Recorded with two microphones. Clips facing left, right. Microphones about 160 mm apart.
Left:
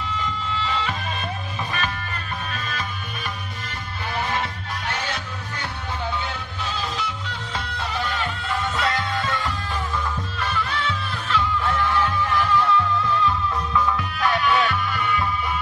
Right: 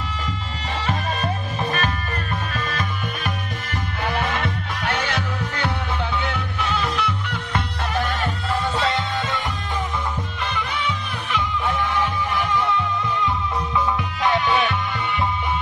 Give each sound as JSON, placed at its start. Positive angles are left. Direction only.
{"t": 0.6, "sound": "music", "side_deg": -45}
{"t": 4.0, "sound": "music", "side_deg": -65}
{"t": 8.7, "sound": "music", "side_deg": -30}
{"t": 10.5, "sound": "music", "side_deg": -15}